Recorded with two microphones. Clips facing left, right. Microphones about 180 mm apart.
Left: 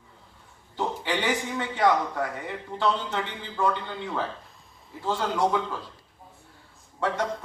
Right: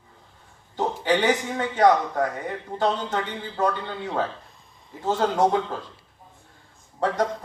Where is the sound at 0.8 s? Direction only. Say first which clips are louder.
Right 6 dB; 40° right (ahead or behind).